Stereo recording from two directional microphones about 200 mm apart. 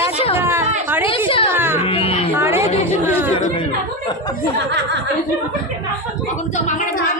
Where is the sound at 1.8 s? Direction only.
30° left (ahead or behind).